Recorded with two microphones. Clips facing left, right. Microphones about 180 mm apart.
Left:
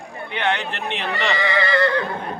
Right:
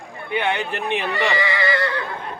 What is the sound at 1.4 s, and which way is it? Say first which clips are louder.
Neigh: left 2 dB; 50° left (ahead or behind).